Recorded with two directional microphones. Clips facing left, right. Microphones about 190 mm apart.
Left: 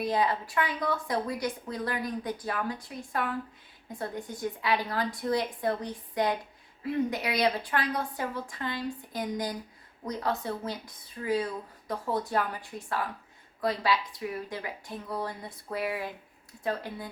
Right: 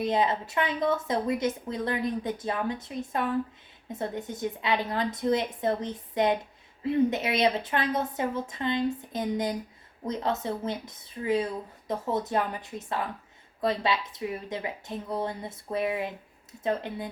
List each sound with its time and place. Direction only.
0.0 s a woman's voice: 20° right (ahead or behind)